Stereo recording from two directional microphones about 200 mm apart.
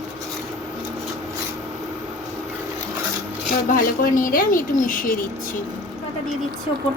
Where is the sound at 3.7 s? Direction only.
45° left (ahead or behind).